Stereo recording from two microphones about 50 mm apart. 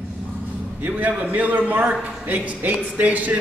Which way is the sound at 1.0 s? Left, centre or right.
Right.